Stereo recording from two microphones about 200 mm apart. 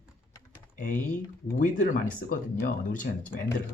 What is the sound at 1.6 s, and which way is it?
Speech, 40° left (ahead or behind).